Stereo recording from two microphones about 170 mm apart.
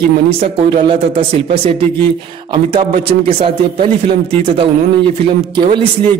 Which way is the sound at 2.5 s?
30° right (ahead or behind).